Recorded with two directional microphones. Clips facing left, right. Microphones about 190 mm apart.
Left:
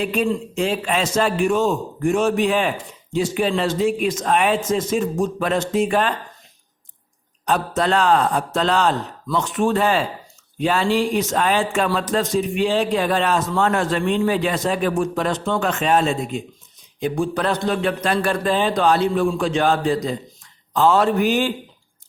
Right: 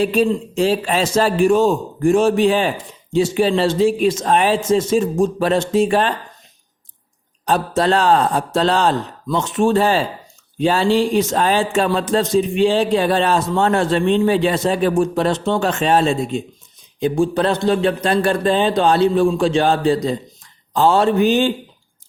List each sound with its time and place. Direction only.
0.0 s a man's voice: 35° right (ahead or behind)
7.4 s a man's voice: 30° right (ahead or behind)